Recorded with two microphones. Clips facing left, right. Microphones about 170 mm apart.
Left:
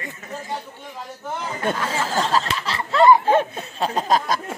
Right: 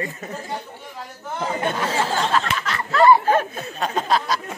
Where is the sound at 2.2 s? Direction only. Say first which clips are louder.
Even; 35° left (ahead or behind).